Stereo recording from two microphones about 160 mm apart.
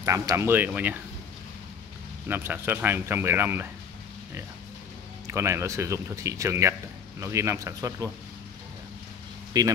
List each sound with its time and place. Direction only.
0.0 s speech: 20° right (ahead or behind)
2.2 s speech: 10° right (ahead or behind)
5.2 s speech: 15° right (ahead or behind)
9.5 s speech: 25° right (ahead or behind)